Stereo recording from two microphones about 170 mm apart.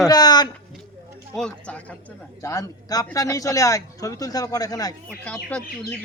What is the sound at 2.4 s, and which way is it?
Speech, 20° left (ahead or behind).